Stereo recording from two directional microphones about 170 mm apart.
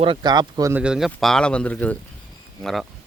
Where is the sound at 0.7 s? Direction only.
5° right (ahead or behind).